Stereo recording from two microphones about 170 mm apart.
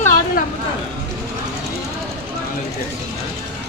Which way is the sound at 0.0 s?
50° left (ahead or behind).